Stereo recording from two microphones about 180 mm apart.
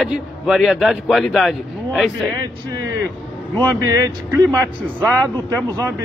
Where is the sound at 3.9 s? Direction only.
20° right (ahead or behind).